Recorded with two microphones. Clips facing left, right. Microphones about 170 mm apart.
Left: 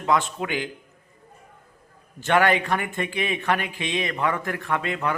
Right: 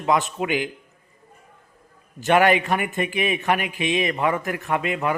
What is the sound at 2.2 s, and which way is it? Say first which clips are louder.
A man's voice: right 3 dB; 15° right (ahead or behind).